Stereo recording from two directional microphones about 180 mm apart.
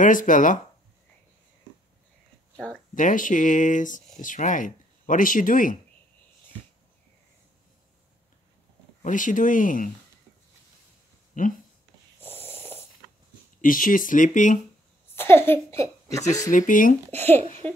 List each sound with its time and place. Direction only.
0.0 s speech: 45° left (ahead or behind)
2.5 s speech: 5° left (ahead or behind)
2.9 s speech: 45° left (ahead or behind)
9.0 s speech: 45° left (ahead or behind)
11.4 s speech: 45° left (ahead or behind)
12.2 s snoring: 10° left (ahead or behind)
13.6 s speech: 50° left (ahead or behind)
15.1 s a woman's voice: 15° left (ahead or behind)
16.4 s speech: 45° left (ahead or behind)
17.4 s laughter: 35° right (ahead or behind)